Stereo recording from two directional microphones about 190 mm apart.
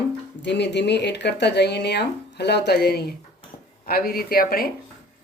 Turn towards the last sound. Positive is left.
turn(degrees=50)  # may be behind; listen again after turning